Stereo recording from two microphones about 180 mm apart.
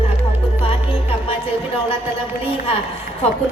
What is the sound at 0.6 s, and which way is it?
Music, 30° left (ahead or behind).